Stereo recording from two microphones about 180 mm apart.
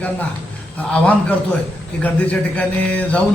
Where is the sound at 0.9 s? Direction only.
5° left (ahead or behind).